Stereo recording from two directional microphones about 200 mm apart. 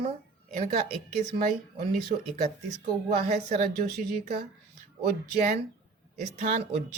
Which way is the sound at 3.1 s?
35° right (ahead or behind).